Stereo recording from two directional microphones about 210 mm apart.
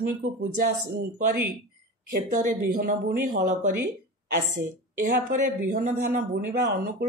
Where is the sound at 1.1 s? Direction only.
40° right (ahead or behind).